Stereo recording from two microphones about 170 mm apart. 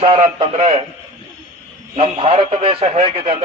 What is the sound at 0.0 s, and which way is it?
Speech, 35° right (ahead or behind).